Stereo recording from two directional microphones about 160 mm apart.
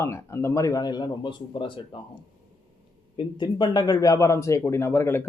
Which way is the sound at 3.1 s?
30° left (ahead or behind).